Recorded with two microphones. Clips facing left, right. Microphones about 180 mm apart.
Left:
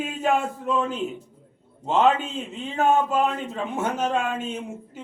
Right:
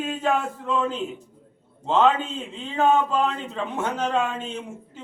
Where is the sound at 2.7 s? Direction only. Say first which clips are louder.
Even; 10° left (ahead or behind).